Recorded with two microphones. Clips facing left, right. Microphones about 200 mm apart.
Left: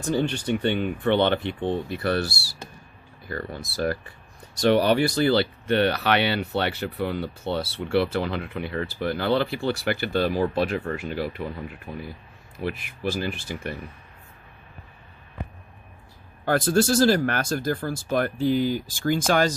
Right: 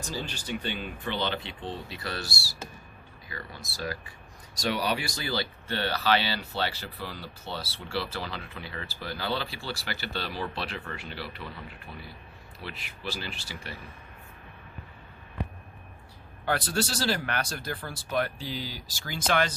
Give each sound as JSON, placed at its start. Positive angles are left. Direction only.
{"t": 0.0, "sound": "speech", "side_deg": 60}
{"t": 16.5, "sound": "speech", "side_deg": 50}